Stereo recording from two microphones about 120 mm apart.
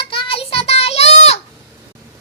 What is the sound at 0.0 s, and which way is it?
Child singing, 45° left (ahead or behind).